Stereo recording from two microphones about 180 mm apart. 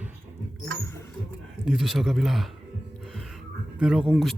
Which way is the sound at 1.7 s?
Centre (ahead or behind).